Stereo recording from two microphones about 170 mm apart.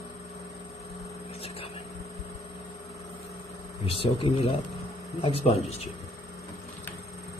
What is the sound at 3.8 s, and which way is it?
Speech, 35° left (ahead or behind).